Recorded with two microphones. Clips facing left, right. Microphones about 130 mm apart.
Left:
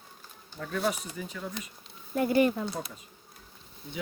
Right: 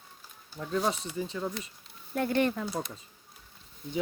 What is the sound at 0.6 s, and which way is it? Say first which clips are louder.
Speech: right 1 dB; 25° right (ahead or behind).